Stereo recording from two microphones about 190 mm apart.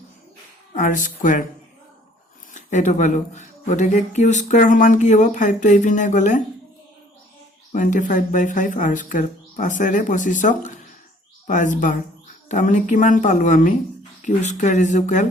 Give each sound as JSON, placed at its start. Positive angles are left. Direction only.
{"t": 0.7, "sound": "speech", "side_deg": 45}
{"t": 2.5, "sound": "speech", "side_deg": 40}
{"t": 7.7, "sound": "speech", "side_deg": 40}